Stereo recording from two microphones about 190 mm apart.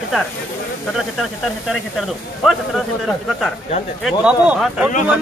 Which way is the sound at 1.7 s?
Centre (ahead or behind).